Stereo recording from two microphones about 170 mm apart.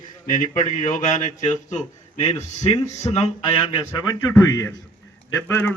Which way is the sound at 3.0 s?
25° left (ahead or behind).